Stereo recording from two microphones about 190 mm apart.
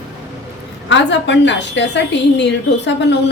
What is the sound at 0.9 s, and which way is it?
A woman's voice, 70° left (ahead or behind).